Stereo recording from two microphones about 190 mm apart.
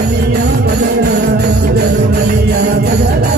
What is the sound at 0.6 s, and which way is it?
Music, 55° right (ahead or behind).